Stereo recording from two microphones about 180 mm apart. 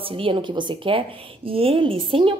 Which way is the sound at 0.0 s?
30° right (ahead or behind).